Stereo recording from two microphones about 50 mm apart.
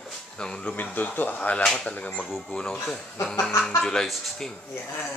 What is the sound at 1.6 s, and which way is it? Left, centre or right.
Speech, centre.